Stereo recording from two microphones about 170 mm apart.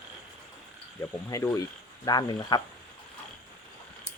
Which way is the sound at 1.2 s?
20° left (ahead or behind).